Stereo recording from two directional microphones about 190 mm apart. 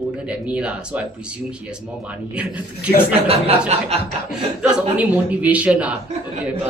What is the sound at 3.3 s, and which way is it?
Speech, 30° right (ahead or behind).